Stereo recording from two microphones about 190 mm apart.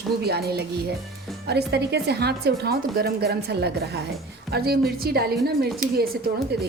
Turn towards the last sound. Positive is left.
turn(degrees=-50)  # may be behind; listen again after turning